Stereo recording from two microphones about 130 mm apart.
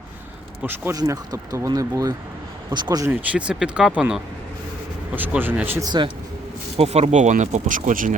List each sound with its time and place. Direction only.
0.6 s speech: 15° right (ahead or behind)
0.9 s speech: 30° right (ahead or behind)
3.1 s speech: 10° right (ahead or behind)
5.8 s speech: 35° right (ahead or behind)
6.7 s speech: 55° right (ahead or behind); by 8.1 s 85° right